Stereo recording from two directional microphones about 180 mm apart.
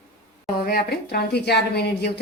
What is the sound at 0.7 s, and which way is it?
Speech, 60° left (ahead or behind).